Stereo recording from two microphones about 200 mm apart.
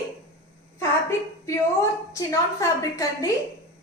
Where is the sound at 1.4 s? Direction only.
15° left (ahead or behind).